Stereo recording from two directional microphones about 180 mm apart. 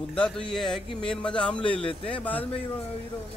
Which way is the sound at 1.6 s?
30° left (ahead or behind).